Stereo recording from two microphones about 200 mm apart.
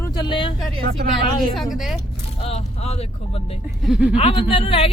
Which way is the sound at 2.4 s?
30° left (ahead or behind).